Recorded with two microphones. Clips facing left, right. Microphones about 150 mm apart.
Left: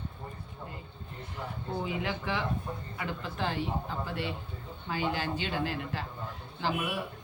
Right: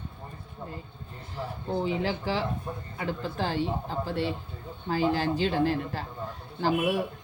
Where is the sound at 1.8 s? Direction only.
30° right (ahead or behind).